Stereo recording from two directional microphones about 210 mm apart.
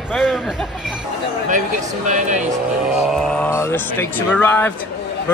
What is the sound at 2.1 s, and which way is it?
Speech, 35° right (ahead or behind).